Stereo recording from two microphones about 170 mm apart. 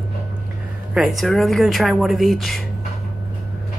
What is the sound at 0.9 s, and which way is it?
Speech, centre (ahead or behind).